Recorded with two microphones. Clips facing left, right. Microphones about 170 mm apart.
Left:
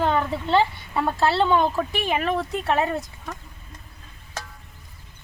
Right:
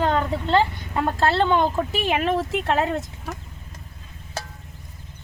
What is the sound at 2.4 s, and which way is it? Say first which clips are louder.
Speech: right 2 dB; 20° right (ahead or behind).